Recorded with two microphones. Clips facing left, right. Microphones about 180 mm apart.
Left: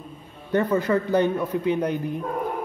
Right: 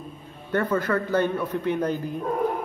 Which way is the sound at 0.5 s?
15° left (ahead or behind).